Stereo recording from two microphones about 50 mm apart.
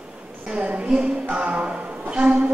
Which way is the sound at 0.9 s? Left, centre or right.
Centre.